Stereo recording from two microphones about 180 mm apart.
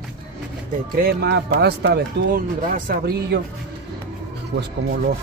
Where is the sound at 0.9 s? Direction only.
60° right (ahead or behind).